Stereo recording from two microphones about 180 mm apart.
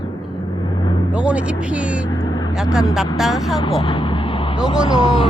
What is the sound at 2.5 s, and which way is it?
Speech, 5° right (ahead or behind).